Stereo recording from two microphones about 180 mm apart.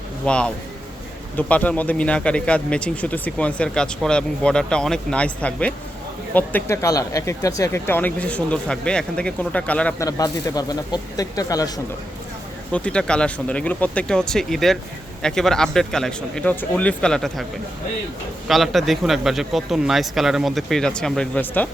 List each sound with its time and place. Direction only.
0.3 s speech: 5° left (ahead or behind)
10.0 s speech: 20° left (ahead or behind)
12.7 s speech: 5° left (ahead or behind)
18.4 s speech: centre (ahead or behind)